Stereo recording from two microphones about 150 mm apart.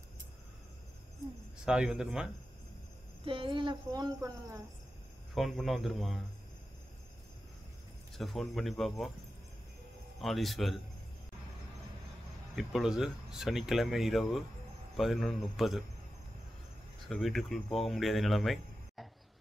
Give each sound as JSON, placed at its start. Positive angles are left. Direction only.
{"t": 1.7, "sound": "speech", "side_deg": -5}
{"t": 3.3, "sound": "speech", "side_deg": -35}
{"t": 5.3, "sound": "speech", "side_deg": 0}
{"t": 8.2, "sound": "speech", "side_deg": 0}
{"t": 10.2, "sound": "speech", "side_deg": 0}
{"t": 12.5, "sound": "speech", "side_deg": 0}
{"t": 17.1, "sound": "speech", "side_deg": 0}